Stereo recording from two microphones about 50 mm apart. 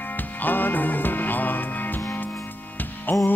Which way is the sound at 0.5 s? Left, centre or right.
Left.